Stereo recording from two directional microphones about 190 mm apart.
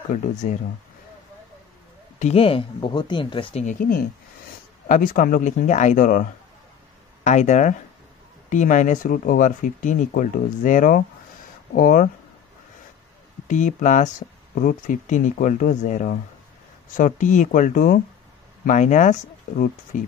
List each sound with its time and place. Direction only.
0.4 s speech: 40° left (ahead or behind)
2.1 s speech: 35° left (ahead or behind)
3.6 s speech: 50° left (ahead or behind)
7.2 s speech: 40° left (ahead or behind)
13.5 s speech: 40° left (ahead or behind)